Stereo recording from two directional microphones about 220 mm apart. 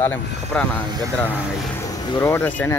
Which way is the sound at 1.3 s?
5° right (ahead or behind).